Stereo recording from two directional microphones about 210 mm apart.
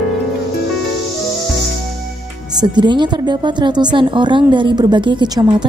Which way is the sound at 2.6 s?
20° right (ahead or behind).